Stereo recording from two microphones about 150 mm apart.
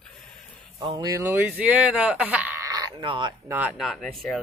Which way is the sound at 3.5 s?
10° right (ahead or behind).